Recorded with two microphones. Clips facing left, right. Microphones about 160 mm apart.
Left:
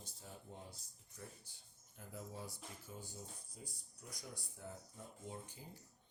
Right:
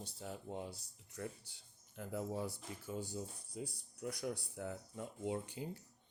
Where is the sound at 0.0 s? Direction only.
70° right (ahead or behind).